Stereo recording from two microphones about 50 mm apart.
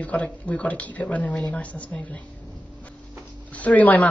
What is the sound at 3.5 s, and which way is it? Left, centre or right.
Speech, left.